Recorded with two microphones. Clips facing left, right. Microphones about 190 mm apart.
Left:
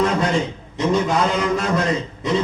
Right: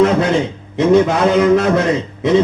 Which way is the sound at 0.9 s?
65° right (ahead or behind).